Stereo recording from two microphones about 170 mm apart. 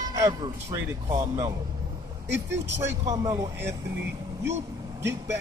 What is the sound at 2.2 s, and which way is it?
Speech, 90° right.